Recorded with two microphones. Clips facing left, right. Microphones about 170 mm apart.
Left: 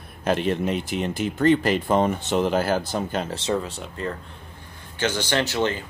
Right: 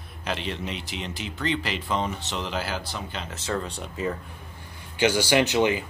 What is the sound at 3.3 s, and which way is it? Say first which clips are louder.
Speech: left 5 dB; 25° left (ahead or behind).